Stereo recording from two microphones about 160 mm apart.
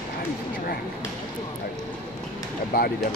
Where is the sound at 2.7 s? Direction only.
70° left (ahead or behind).